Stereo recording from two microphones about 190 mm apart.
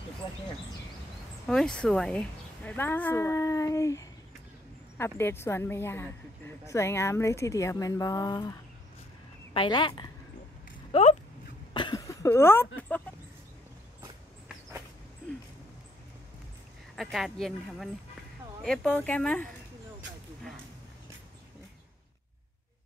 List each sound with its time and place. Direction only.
1.5 s a woman's voice: 5° left (ahead or behind); by 11.1 s 30° left (ahead or behind)
11.7 s a sound: 20° left (ahead or behind)
16.9 s speech: centre (ahead or behind)